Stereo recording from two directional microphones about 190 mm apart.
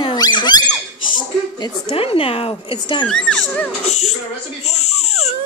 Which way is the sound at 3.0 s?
5° left (ahead or behind).